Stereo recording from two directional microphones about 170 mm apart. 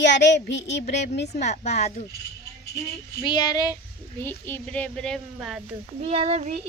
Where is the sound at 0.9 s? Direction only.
75° left (ahead or behind).